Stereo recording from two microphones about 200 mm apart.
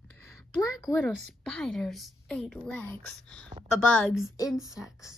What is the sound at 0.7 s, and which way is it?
A woman's voice, centre (ahead or behind).